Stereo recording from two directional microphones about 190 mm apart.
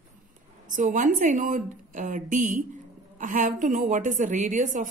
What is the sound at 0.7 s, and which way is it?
A woman's voice, 45° right (ahead or behind).